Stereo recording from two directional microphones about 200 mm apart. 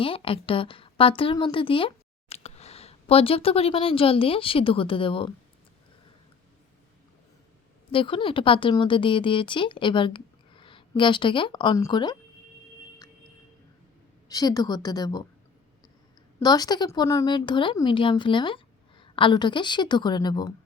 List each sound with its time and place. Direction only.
0.0 s speech: 25° left (ahead or behind)
7.9 s speech: 25° left (ahead or behind)
14.3 s speech: 20° left (ahead or behind)
16.4 s speech: 20° left (ahead or behind)